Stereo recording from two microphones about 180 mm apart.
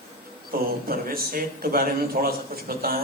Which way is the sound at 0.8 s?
55° right (ahead or behind).